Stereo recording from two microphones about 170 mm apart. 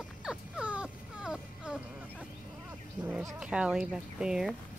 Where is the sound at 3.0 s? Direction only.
5° right (ahead or behind).